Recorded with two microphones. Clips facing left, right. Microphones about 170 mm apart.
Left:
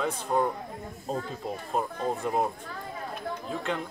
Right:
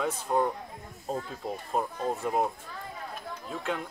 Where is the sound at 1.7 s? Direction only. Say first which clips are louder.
Left 1 dB; centre (ahead or behind).